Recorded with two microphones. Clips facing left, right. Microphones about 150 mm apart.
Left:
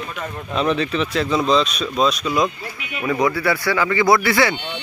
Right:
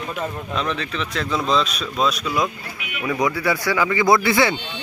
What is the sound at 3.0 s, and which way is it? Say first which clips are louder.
Speech: left 2 dB; 15° right (ahead or behind).